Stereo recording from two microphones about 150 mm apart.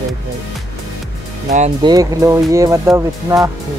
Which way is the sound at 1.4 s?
50° right (ahead or behind).